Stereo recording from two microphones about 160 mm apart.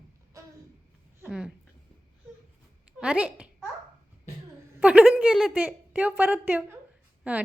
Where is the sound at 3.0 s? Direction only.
5° right (ahead or behind).